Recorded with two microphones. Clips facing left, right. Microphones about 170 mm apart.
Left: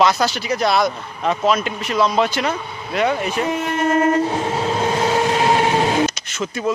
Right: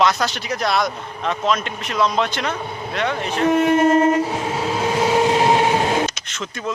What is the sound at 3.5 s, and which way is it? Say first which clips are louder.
Speech: right 6 dB; 55° right (ahead or behind).